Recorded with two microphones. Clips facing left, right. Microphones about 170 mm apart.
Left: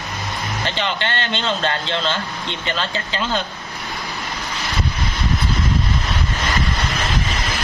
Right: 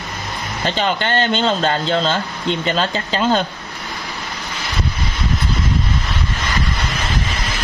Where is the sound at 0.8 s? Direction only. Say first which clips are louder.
Right 7 dB; 45° right (ahead or behind).